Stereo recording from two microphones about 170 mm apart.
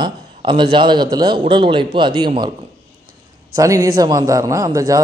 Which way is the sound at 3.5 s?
20° right (ahead or behind).